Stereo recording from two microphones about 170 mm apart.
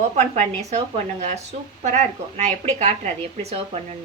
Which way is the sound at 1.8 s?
45° right (ahead or behind).